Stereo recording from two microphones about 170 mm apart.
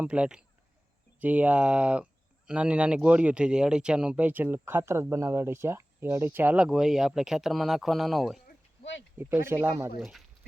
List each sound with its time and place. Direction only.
0.0 s speech: 5° right (ahead or behind)
8.4 s a sound: 90° left
9.1 s speech: 15° right (ahead or behind)
10.0 s speech: centre (ahead or behind)